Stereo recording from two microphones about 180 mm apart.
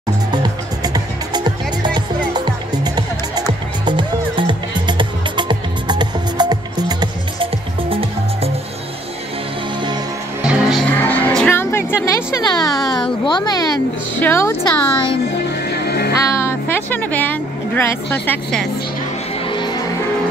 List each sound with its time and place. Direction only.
0.3 s music: 20° right (ahead or behind)
10.4 s music: 5° right (ahead or behind); by 13.0 s 20° left (ahead or behind)
13.2 s a sound: 25° left (ahead or behind)
14.2 s speech: 10° left (ahead or behind)
15.8 s music: 60° left (ahead or behind)
16.3 s music: 15° left (ahead or behind)
19.4 s music: 25° left (ahead or behind)